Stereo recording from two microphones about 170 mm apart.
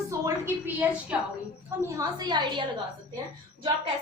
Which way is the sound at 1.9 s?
20° right (ahead or behind).